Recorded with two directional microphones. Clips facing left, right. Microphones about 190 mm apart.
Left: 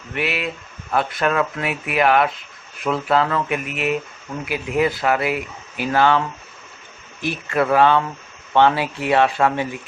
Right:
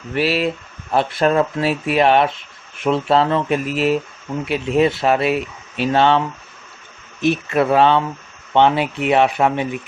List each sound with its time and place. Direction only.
0.1 s speech: 30° right (ahead or behind)